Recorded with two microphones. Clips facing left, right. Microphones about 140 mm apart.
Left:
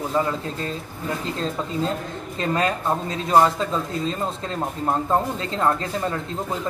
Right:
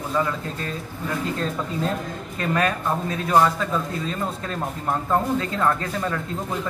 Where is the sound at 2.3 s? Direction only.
25° left (ahead or behind).